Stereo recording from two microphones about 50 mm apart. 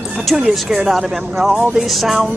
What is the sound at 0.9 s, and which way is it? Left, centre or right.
Speech, centre.